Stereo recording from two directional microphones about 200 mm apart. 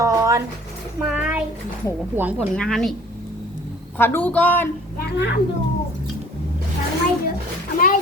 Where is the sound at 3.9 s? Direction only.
10° left (ahead or behind).